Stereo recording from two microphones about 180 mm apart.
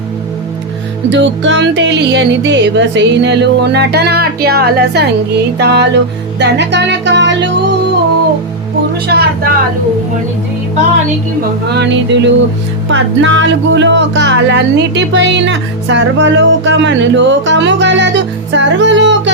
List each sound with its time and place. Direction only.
1.1 s speech: 85° right
9.1 s speech: 70° right (ahead or behind)
11.7 s speech: 75° right (ahead or behind)
12.9 s speech: 90° right